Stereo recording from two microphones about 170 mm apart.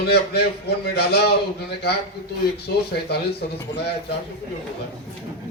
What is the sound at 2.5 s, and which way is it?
Speech, 70° left (ahead or behind).